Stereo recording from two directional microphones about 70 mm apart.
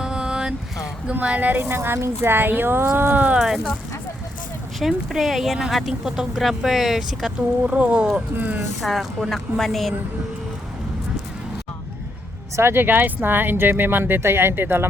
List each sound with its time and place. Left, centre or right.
0.0 s a sound: centre
1.1 s speech: right
1.6 s speech: right
3.3 s speech: centre
4.8 s speech: centre
7.7 s speech: centre
8.8 s speech: centre
12.5 s speech: right